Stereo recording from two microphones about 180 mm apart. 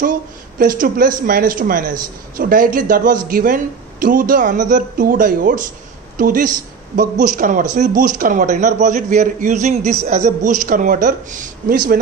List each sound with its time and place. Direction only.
0.6 s a man's voice: 50° right (ahead or behind)